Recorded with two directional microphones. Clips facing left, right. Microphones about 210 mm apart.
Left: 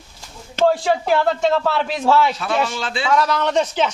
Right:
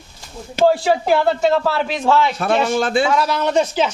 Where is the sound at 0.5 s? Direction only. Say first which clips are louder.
Right 2 dB; 5° right (ahead or behind).